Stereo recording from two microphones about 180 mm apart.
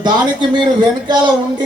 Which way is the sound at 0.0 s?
25° right (ahead or behind).